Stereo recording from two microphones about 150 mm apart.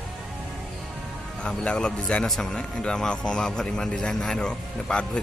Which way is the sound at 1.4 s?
5° left (ahead or behind).